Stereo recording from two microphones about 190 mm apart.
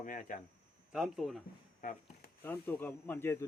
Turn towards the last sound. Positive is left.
turn(degrees=10)  # may be behind; listen again after turning